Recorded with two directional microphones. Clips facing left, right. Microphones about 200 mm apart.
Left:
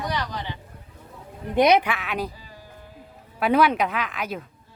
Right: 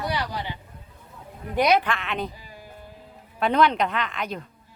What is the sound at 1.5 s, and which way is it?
Speech, 20° left (ahead or behind).